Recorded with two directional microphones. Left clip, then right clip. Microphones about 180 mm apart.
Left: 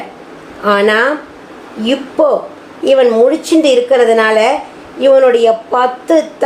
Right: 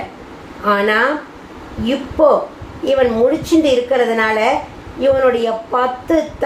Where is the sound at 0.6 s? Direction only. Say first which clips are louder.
Left 4 dB; 55° left (ahead or behind).